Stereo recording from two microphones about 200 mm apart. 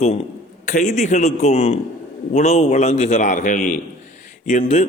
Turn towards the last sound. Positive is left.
turn(degrees=35)  # may be behind; listen again after turning